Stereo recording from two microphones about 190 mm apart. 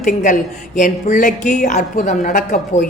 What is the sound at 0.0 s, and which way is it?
Speech, 40° left (ahead or behind).